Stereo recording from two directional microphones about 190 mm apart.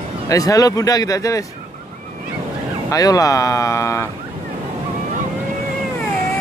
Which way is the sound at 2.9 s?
20° left (ahead or behind).